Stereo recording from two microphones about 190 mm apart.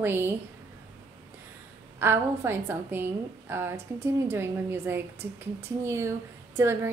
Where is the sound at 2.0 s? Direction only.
10° right (ahead or behind).